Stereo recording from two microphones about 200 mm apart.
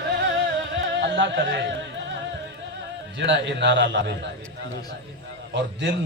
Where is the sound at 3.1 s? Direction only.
60° right (ahead or behind).